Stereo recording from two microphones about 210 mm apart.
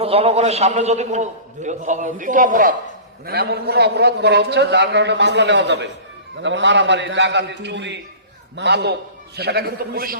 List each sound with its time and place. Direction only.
0.0 s a man's voice: 30° right (ahead or behind); by 10.2 s 45° right (ahead or behind)